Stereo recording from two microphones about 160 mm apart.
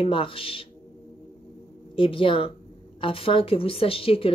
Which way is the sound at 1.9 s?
35° left (ahead or behind).